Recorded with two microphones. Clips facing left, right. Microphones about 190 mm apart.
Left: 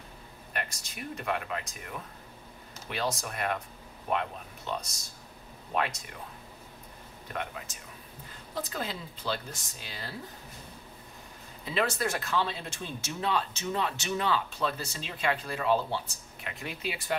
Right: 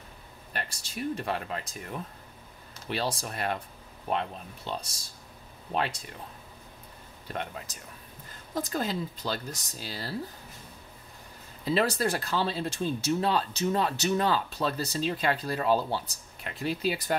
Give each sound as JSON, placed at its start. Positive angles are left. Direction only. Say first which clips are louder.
{"t": 0.5, "sound": "speech", "louder": "even", "side_deg": -30}
{"t": 7.3, "sound": "speech", "louder": "right 1 dB", "side_deg": -35}
{"t": 11.6, "sound": "speech", "louder": "right 4 dB", "side_deg": -35}